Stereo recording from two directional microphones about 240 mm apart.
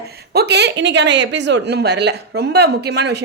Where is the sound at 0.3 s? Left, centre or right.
Right.